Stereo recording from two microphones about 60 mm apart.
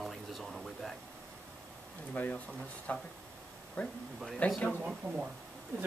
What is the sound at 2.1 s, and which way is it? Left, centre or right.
Speech, left.